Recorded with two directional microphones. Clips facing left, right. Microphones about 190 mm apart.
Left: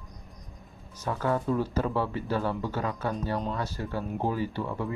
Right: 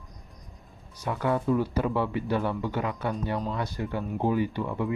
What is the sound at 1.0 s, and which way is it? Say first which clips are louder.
Speech: right 1 dB; 15° right (ahead or behind).